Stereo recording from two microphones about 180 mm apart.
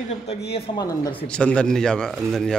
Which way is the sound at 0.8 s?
20° left (ahead or behind).